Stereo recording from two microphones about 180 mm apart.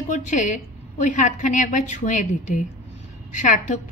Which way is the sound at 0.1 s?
40° left (ahead or behind).